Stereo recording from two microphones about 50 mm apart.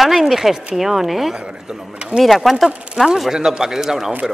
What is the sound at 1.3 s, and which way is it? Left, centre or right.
Speech, centre.